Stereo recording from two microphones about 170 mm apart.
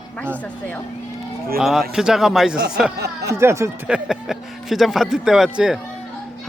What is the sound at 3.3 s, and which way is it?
Speech, 15° right (ahead or behind).